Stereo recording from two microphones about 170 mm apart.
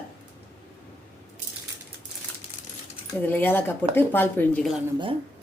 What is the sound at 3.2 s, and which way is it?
Speech, 10° left (ahead or behind).